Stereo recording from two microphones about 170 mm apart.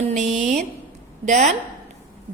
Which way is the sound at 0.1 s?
45° right (ahead or behind).